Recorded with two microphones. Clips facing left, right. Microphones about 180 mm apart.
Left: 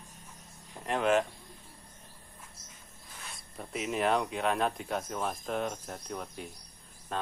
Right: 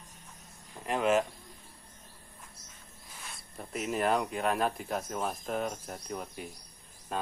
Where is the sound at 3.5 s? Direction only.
Centre (ahead or behind).